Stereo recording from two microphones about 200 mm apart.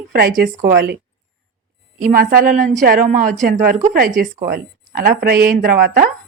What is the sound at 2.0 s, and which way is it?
A woman's voice, 45° right (ahead or behind).